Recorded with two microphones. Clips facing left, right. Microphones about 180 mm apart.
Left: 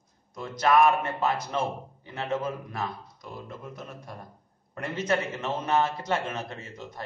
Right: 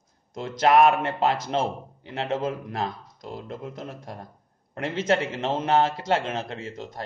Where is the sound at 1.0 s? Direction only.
80° right.